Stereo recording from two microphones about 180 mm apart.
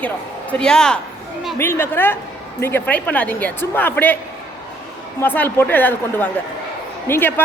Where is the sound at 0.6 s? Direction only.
5° left (ahead or behind).